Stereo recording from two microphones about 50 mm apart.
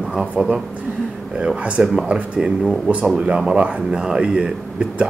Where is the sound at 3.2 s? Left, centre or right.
Centre.